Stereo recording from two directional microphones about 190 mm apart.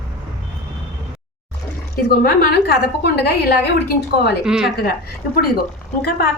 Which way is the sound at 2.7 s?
60° left (ahead or behind).